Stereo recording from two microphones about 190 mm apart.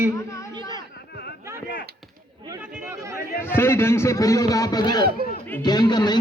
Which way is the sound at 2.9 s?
15° right (ahead or behind).